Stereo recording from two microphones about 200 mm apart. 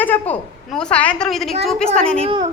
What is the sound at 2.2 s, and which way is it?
Speech, 30° right (ahead or behind).